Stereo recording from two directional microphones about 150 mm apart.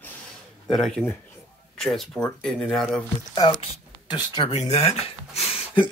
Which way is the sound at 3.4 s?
30° left (ahead or behind).